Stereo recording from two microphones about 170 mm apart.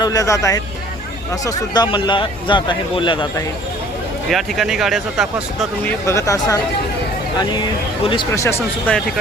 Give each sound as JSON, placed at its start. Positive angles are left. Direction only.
{"t": 0.0, "sound": "speech", "side_deg": 20}
{"t": 4.3, "sound": "speech", "side_deg": 0}
{"t": 5.8, "sound": "speech", "side_deg": 15}
{"t": 8.0, "sound": "speech", "side_deg": 30}
{"t": 8.3, "sound": "speech", "side_deg": 15}